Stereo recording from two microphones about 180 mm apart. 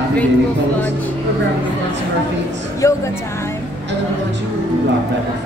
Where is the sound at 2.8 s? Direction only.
15° left (ahead or behind).